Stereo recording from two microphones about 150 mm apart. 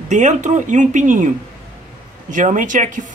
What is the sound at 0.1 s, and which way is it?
Speech, 50° right (ahead or behind).